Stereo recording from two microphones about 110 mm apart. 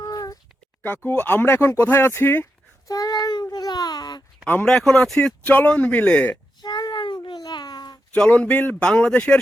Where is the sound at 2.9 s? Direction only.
35° left (ahead or behind).